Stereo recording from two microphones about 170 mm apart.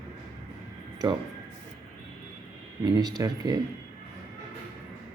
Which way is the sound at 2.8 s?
25° right (ahead or behind).